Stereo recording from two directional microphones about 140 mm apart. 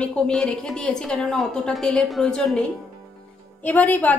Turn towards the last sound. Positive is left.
turn(degrees=10)  # may be behind; listen again after turning